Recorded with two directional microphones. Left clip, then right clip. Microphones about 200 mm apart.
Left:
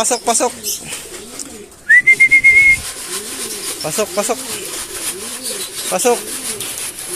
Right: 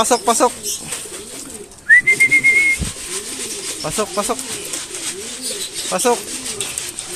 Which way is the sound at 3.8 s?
10° right (ahead or behind).